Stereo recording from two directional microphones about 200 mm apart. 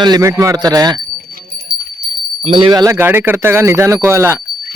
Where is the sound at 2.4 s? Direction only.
25° right (ahead or behind).